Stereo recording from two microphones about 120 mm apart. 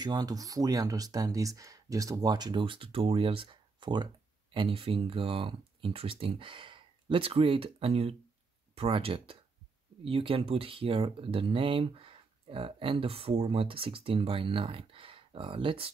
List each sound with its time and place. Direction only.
0.0 s speech: 35° right (ahead or behind)